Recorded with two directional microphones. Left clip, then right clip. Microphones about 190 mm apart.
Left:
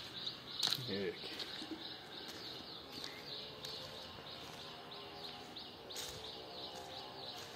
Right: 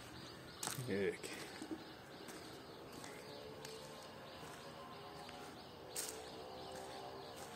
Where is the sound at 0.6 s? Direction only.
15° right (ahead or behind).